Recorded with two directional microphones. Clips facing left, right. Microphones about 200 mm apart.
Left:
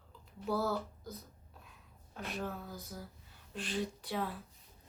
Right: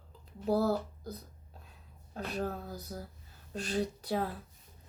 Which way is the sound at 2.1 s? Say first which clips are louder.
Right 5 dB; 40° right (ahead or behind).